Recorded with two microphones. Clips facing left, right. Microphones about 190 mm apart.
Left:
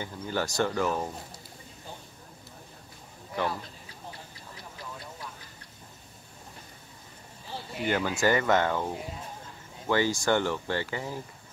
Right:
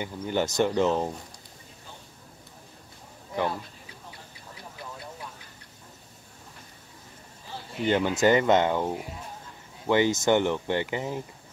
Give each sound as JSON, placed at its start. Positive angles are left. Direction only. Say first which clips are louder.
{"t": 0.0, "sound": "speech", "louder": "right 4 dB", "side_deg": -20}
{"t": 7.8, "sound": "speech", "louder": "right 4 dB", "side_deg": -20}